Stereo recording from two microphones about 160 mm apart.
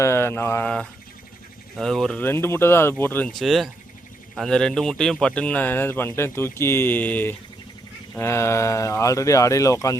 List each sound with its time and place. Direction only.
0.0 s mantra: 15° left (ahead or behind)
1.7 s speech: centre (ahead or behind); by 10.0 s 20° left (ahead or behind)